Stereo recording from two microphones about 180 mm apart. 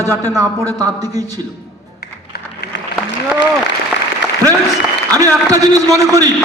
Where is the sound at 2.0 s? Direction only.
60° left (ahead or behind).